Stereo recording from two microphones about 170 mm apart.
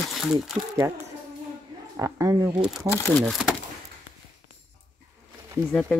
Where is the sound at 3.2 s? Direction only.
5° left (ahead or behind).